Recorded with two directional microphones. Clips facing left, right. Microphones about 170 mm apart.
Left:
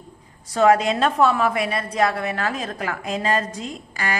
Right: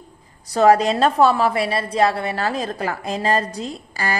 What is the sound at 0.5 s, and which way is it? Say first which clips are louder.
A woman's voice: right 2 dB; 35° right (ahead or behind).